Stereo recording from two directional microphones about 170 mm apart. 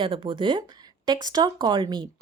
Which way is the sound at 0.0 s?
30° right (ahead or behind).